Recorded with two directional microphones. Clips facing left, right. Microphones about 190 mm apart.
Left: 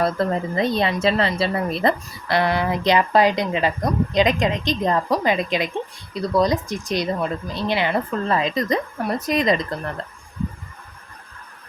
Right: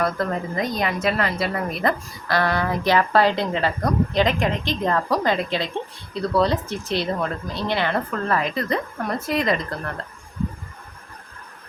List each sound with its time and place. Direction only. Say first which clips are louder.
0.0 s a woman's voice: left 3 dB; 25° left (ahead or behind)